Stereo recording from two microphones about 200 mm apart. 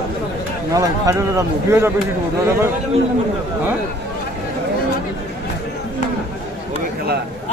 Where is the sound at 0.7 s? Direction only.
15° right (ahead or behind).